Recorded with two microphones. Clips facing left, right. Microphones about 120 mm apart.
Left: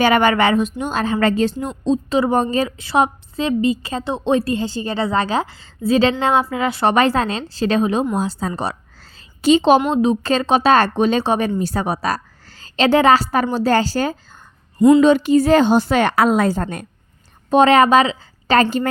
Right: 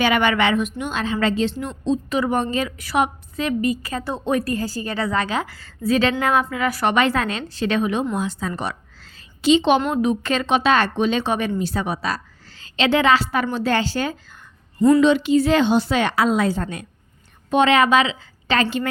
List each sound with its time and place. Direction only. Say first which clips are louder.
0.0 s a woman's voice: left 4 dB; 40° left (ahead or behind)
1.8 s a woman's voice: left 4 dB; 30° left (ahead or behind)
14.8 s a woman's voice: left 4 dB; 15° left (ahead or behind)
15.0 s a woman's voice: left 3 dB; 45° left (ahead or behind)